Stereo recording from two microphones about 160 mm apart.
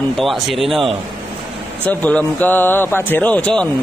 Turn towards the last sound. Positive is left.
turn(degrees=5)  # may be behind; listen again after turning